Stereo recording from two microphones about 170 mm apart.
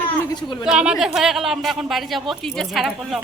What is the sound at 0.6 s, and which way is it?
Speech, 5° right (ahead or behind).